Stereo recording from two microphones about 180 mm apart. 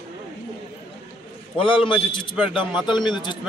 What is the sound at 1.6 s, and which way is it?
Speech, 30° left (ahead or behind).